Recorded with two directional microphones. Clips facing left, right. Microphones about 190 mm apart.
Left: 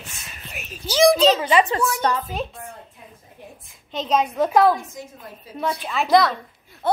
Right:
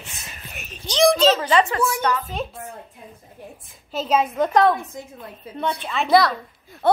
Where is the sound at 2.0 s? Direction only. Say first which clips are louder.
Left 2 dB; 30° left (ahead or behind).